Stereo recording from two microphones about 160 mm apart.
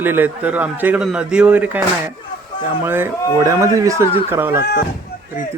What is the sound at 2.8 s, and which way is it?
A man's voice, 15° right (ahead or behind).